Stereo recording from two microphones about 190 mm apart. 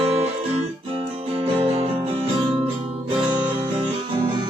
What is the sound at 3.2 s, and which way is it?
Music, 5° right (ahead or behind).